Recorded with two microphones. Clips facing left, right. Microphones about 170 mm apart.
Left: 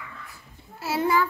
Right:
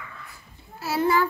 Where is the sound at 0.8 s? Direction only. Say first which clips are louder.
Right 1 dB; 25° left (ahead or behind).